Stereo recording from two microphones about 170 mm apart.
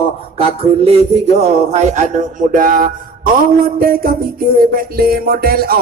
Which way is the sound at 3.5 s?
60° right (ahead or behind).